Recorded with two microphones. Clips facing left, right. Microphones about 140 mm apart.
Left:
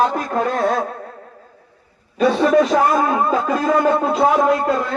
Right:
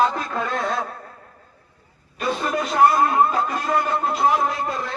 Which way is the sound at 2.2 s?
85° left.